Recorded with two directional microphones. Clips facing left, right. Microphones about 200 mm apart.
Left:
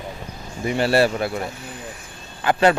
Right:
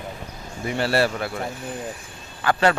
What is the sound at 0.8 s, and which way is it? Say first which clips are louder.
Speech: left 3 dB; 15° left (ahead or behind).